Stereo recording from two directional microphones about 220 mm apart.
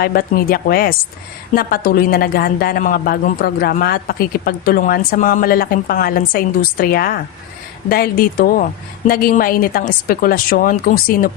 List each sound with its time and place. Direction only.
0.0 s a woman's voice: 45° left (ahead or behind)